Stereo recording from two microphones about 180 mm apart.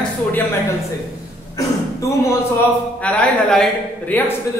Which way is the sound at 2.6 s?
10° left (ahead or behind).